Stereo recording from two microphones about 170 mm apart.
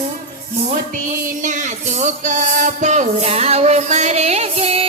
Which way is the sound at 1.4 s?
45° right (ahead or behind).